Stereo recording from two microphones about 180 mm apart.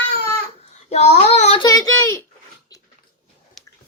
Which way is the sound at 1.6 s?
20° left (ahead or behind).